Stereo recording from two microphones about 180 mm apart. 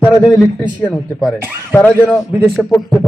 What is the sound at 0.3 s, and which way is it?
A man's voice, 10° left (ahead or behind).